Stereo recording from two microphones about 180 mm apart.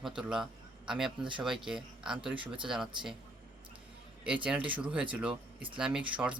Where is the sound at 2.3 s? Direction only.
30° right (ahead or behind).